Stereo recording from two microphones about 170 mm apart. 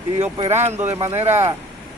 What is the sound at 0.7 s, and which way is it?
Speech, 15° right (ahead or behind).